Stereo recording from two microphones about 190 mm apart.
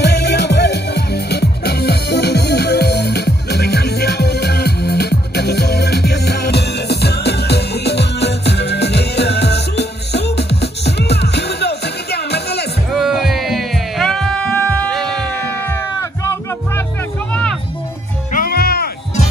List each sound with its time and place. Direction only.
0.0 s music: 65° left (ahead or behind)
12.9 s music: centre (ahead or behind)
17.3 s music: 5° left (ahead or behind)
18.3 s music: 50° left (ahead or behind)